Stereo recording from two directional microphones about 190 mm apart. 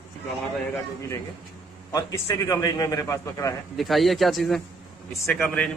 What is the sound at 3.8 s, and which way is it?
A man's voice, centre (ahead or behind).